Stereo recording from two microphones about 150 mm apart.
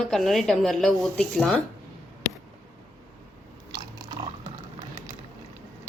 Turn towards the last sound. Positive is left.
turn(degrees=-25)  # may be behind; listen again after turning